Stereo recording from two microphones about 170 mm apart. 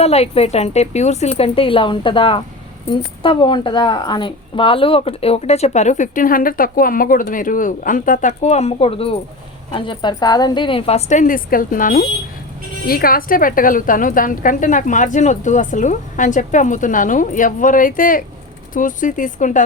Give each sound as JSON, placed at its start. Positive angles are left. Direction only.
{"t": 0.0, "sound": "a woman's voice", "side_deg": 40}